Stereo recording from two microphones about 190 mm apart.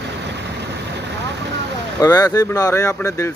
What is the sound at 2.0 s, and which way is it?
Speech, 20° left (ahead or behind).